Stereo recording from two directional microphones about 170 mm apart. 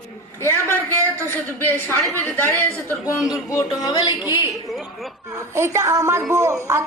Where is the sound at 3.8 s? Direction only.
25° left (ahead or behind).